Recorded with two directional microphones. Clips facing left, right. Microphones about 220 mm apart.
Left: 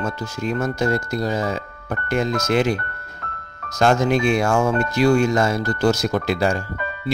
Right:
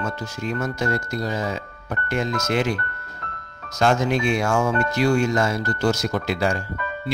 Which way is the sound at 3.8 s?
45° left (ahead or behind).